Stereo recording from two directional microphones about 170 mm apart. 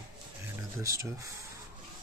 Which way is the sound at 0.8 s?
20° right (ahead or behind).